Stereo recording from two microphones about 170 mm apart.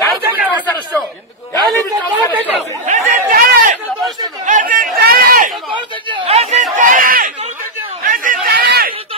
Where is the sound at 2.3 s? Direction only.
10° right (ahead or behind).